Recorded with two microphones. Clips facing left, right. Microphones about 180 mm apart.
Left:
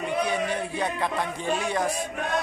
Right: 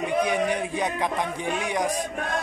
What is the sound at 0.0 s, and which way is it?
A man's voice, 15° right (ahead or behind).